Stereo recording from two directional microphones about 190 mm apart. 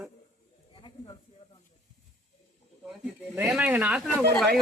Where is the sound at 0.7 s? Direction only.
25° left (ahead or behind).